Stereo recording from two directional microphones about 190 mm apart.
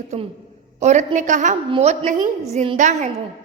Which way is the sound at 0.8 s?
40° right (ahead or behind).